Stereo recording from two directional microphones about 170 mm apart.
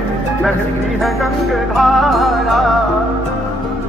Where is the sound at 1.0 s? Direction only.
Centre (ahead or behind).